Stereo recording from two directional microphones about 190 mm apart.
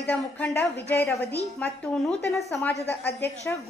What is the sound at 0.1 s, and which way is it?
A woman's voice, 10° left (ahead or behind).